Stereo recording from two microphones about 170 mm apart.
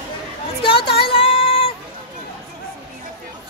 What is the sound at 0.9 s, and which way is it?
Music, 35° left (ahead or behind).